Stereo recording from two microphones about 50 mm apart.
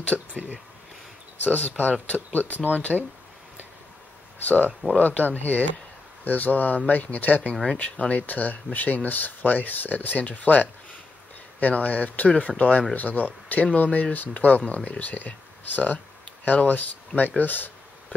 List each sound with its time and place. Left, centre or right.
0.3 s a sound: right
1.4 s speech: left
4.9 s speech: left
7.6 s speech: left
13.8 s speech: left
14.1 s speech: left